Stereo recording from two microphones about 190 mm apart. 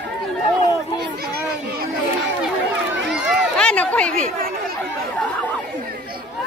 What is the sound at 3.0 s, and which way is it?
Run, centre (ahead or behind).